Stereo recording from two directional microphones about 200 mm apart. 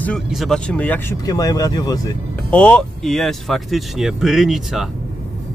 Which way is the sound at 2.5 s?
5° left (ahead or behind).